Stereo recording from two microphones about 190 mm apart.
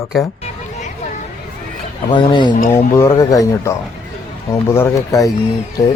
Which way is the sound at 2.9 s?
15° left (ahead or behind).